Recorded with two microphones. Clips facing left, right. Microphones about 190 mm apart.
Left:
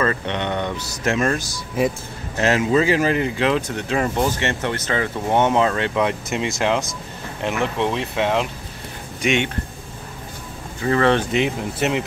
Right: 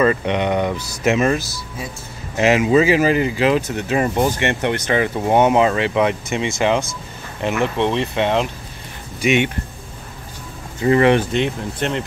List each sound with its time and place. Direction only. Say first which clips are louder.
0.0 s speech: right 5 dB; 10° right (ahead or behind)
10.8 s speech: right 4 dB; 15° right (ahead or behind)
11.3 s speech: even; 5° left (ahead or behind)